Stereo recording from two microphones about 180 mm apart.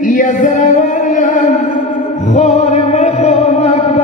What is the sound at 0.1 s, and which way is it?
Music, 45° left (ahead or behind).